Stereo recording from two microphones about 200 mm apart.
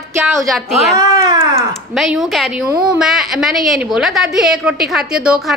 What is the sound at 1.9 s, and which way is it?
A woman's voice, centre (ahead or behind).